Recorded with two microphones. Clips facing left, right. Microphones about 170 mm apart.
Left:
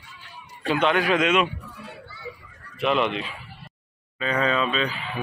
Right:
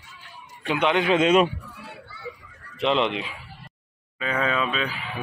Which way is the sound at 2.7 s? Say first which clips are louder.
Even; 20° right (ahead or behind).